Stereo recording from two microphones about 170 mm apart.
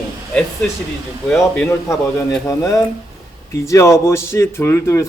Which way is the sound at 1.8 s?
15° left (ahead or behind).